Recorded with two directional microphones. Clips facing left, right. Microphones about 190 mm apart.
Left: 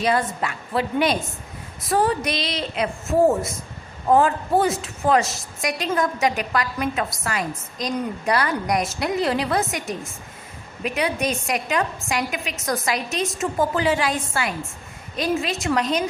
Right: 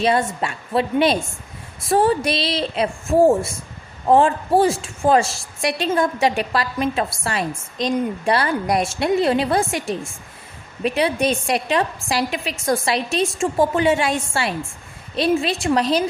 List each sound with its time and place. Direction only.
0.0 s a woman's voice: 25° right (ahead or behind)